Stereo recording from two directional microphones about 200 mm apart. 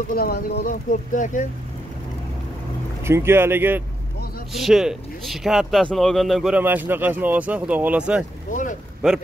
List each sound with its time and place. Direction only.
0.1 s speech: 50° left (ahead or behind)
3.0 s speech: 10° right (ahead or behind)
8.5 s speech: 40° left (ahead or behind)
9.0 s speech: centre (ahead or behind)